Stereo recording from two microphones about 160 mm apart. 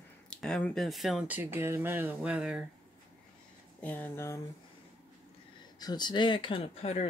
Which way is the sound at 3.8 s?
10° left (ahead or behind).